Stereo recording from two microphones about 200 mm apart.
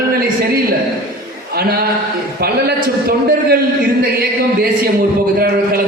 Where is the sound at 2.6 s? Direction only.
50° right (ahead or behind).